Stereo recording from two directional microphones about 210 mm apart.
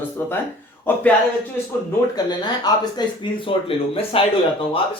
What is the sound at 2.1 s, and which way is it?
Speech, 20° left (ahead or behind).